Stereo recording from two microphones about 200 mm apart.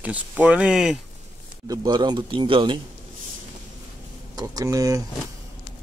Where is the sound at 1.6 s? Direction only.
20° right (ahead or behind).